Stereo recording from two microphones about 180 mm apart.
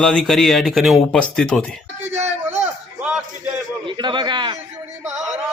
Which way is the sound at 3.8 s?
25° right (ahead or behind).